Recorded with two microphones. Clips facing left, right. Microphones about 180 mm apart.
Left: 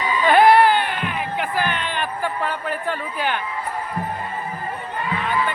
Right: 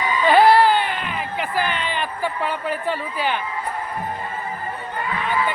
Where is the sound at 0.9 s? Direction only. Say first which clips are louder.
Left 1 dB; 5° left (ahead or behind).